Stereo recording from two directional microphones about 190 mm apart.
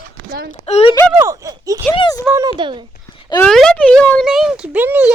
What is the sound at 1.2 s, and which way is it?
Speech, 15° right (ahead or behind).